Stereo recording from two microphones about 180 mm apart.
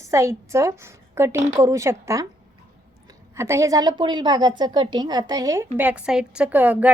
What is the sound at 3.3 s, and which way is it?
A woman's voice, 15° right (ahead or behind).